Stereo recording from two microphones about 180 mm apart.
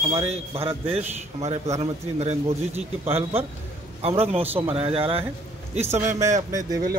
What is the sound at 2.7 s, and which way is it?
Speech, 10° right (ahead or behind).